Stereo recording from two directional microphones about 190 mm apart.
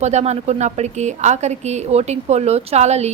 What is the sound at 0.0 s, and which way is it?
A woman's voice, 35° right (ahead or behind).